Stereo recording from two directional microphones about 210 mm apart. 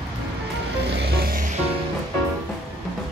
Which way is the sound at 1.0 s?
45° right (ahead or behind).